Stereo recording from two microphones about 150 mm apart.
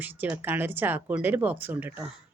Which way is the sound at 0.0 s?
10° right (ahead or behind).